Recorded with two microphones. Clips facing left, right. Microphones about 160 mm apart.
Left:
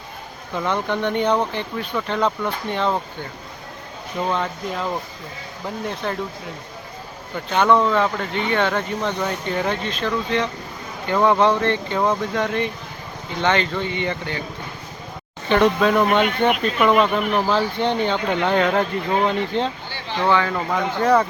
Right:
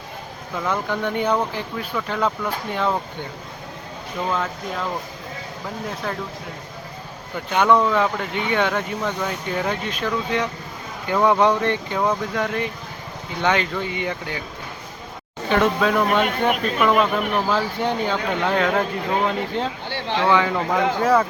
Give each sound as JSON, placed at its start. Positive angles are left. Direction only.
{"t": 0.5, "sound": "speech", "side_deg": -5}
{"t": 5.9, "sound": "speech", "side_deg": 0}
{"t": 7.5, "sound": "speech", "side_deg": -10}
{"t": 15.4, "sound": "speech", "side_deg": 0}
{"t": 19.9, "sound": "a sound", "side_deg": -65}
{"t": 20.2, "sound": "speech", "side_deg": -10}